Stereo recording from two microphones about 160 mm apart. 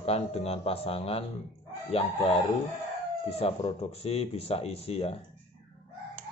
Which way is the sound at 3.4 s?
40° left (ahead or behind).